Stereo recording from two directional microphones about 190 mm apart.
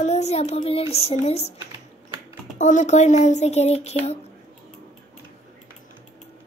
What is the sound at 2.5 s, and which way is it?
A child's voice, 40° left (ahead or behind).